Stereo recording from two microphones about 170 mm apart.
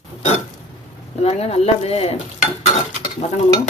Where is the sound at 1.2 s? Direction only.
35° left (ahead or behind).